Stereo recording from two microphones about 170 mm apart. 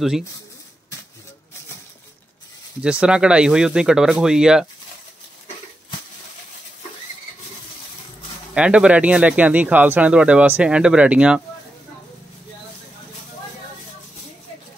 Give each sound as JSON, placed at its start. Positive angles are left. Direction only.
{"t": 2.8, "sound": "speech", "side_deg": -5}
{"t": 8.5, "sound": "speech", "side_deg": -5}